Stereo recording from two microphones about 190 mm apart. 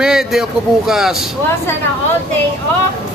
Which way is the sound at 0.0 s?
5° right (ahead or behind).